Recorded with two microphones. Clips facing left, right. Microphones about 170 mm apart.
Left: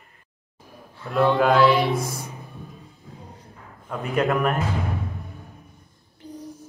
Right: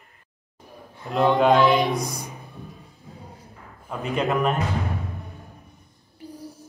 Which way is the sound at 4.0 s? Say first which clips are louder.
Left 1 dB; 20° right (ahead or behind).